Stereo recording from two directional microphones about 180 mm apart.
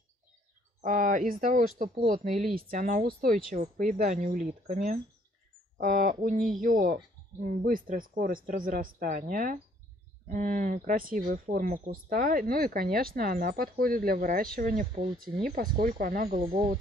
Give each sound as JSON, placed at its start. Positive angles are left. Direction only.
{"t": 0.7, "sound": "speech", "side_deg": -45}
{"t": 16.3, "sound": "speech", "side_deg": -45}